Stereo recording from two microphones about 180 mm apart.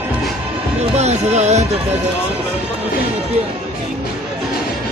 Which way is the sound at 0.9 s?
40° right (ahead or behind).